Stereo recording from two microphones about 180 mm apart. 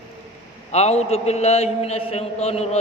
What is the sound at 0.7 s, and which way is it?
A man's voice, 35° left (ahead or behind).